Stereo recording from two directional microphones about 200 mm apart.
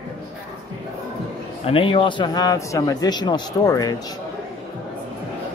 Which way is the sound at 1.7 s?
25° left (ahead or behind).